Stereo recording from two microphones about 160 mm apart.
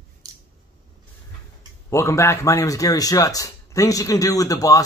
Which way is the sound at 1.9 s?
20° left (ahead or behind).